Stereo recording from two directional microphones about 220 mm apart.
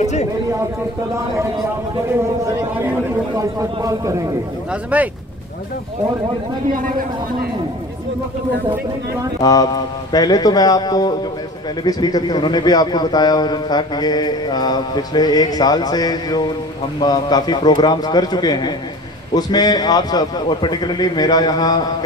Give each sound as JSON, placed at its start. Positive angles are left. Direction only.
{"t": 0.0, "sound": "speech", "side_deg": 30}
{"t": 2.4, "sound": "speech", "side_deg": -10}
{"t": 9.4, "sound": "a man's voice", "side_deg": 15}